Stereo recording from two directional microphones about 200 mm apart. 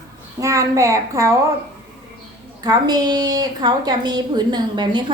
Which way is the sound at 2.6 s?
20° right (ahead or behind).